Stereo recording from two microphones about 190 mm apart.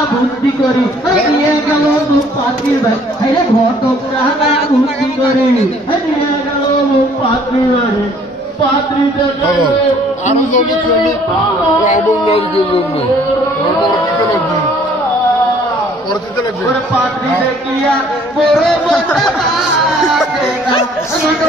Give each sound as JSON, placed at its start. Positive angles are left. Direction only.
{"t": 10.2, "sound": "speech", "side_deg": 40}
{"t": 11.8, "sound": "speech", "side_deg": 35}
{"t": 18.4, "sound": "speech", "side_deg": 0}